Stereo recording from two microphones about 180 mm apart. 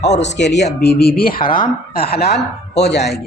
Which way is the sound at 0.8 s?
60° left (ahead or behind).